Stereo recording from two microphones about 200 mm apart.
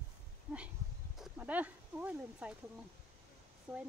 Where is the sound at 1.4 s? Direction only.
10° right (ahead or behind).